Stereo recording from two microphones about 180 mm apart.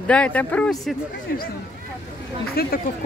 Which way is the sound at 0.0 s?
5° left (ahead or behind).